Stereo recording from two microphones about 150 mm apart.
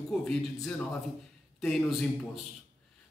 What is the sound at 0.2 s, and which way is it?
A man's voice, 5° left (ahead or behind).